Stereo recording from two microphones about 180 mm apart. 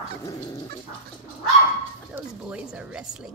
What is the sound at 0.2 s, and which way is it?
Dog, 20° left (ahead or behind).